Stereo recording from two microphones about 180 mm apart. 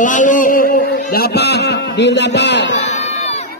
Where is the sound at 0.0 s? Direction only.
45° left (ahead or behind).